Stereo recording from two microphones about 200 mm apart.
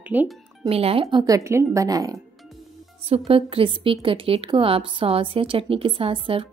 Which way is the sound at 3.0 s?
30° right (ahead or behind).